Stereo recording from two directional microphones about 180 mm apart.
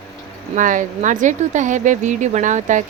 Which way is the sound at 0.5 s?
45° right (ahead or behind).